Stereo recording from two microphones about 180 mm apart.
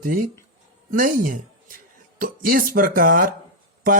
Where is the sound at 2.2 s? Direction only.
50° right (ahead or behind).